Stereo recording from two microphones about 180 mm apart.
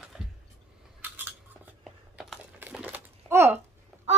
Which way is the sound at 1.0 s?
10° right (ahead or behind).